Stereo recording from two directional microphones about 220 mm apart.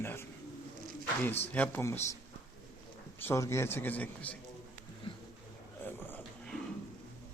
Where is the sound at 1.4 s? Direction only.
10° left (ahead or behind).